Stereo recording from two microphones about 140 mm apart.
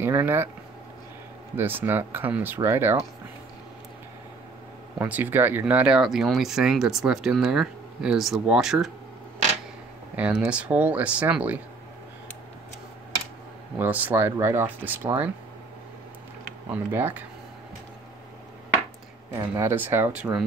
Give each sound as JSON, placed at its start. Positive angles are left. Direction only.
{"t": 0.0, "sound": "speech", "side_deg": -15}
{"t": 1.6, "sound": "speech", "side_deg": -15}
{"t": 4.9, "sound": "speech", "side_deg": -10}
{"t": 10.1, "sound": "speech", "side_deg": -10}
{"t": 13.7, "sound": "speech", "side_deg": -10}
{"t": 16.6, "sound": "speech", "side_deg": -15}
{"t": 19.3, "sound": "speech", "side_deg": -20}